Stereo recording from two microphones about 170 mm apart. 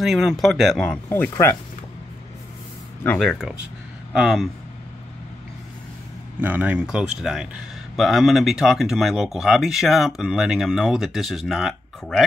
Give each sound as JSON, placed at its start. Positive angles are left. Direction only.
{"t": 0.0, "sound": "speech", "side_deg": 0}
{"t": 3.0, "sound": "speech", "side_deg": 5}
{"t": 6.4, "sound": "speech", "side_deg": -10}